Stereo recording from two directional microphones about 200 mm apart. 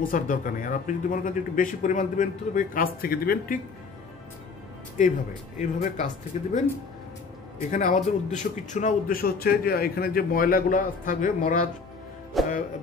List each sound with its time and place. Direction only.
0.0 s speech: 45° left (ahead or behind)
5.6 s speech: 40° left (ahead or behind)
7.7 s a man's voice: 40° left (ahead or behind)
12.4 s music: centre (ahead or behind)